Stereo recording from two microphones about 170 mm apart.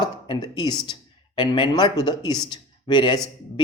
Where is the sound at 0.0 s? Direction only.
25° left (ahead or behind).